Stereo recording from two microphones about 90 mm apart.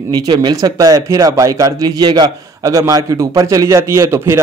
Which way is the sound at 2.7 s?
40° right (ahead or behind).